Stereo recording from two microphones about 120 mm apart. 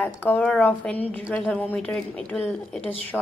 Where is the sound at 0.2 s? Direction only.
15° left (ahead or behind).